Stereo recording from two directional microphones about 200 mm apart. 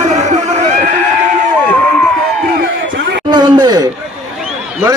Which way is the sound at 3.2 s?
20° right (ahead or behind).